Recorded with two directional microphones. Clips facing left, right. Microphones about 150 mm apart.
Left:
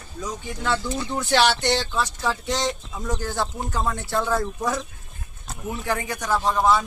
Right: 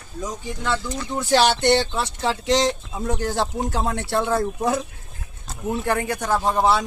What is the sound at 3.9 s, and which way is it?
Speech, 60° right (ahead or behind).